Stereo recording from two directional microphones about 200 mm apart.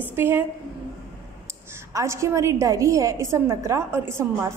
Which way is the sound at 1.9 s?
15° right (ahead or behind).